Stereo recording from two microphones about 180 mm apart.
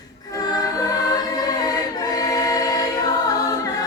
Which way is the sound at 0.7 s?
20° left (ahead or behind).